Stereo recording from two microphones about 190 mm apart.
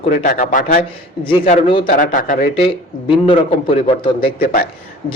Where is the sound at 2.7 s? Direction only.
25° left (ahead or behind).